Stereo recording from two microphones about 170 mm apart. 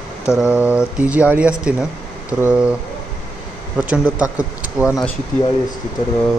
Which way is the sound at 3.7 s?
5° right (ahead or behind).